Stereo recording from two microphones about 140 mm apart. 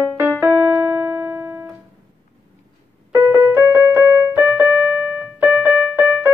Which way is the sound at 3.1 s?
15° right (ahead or behind).